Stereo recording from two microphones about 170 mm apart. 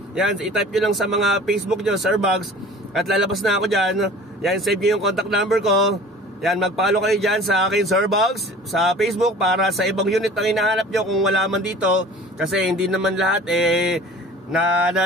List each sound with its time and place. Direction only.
0.1 s a man's voice: 5° right (ahead or behind)